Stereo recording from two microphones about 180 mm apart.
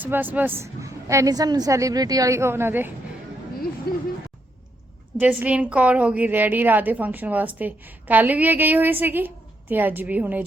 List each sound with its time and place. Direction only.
0.0 s a woman's voice: 10° right (ahead or behind)
3.9 s speech: 60° left (ahead or behind)
5.2 s a woman's voice: 5° right (ahead or behind)